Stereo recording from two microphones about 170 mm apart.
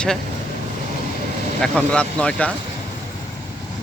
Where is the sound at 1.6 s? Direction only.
5° left (ahead or behind).